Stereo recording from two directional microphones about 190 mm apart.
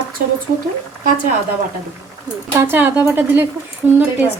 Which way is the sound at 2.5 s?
10° right (ahead or behind).